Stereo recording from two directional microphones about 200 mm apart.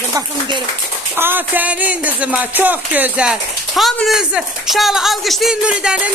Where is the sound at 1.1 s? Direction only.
10° right (ahead or behind).